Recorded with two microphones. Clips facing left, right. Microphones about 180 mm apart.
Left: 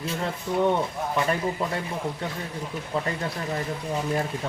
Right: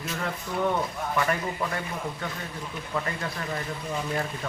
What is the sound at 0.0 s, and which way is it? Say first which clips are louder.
Speech: left 3 dB; 30° left (ahead or behind).